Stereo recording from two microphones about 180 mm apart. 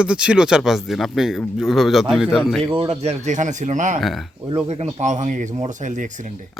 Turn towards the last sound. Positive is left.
turn(degrees=-45)  # may be behind; listen again after turning